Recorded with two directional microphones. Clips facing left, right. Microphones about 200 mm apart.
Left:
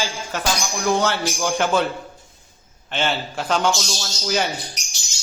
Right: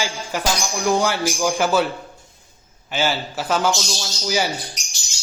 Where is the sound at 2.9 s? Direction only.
5° right (ahead or behind).